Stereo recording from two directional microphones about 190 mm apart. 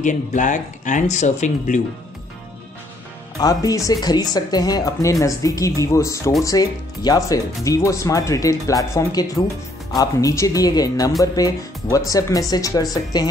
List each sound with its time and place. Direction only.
0.0 s speech: 40° left (ahead or behind)
3.3 s speech: 20° left (ahead or behind)